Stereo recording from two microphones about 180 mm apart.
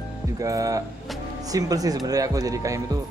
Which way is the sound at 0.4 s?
20° right (ahead or behind).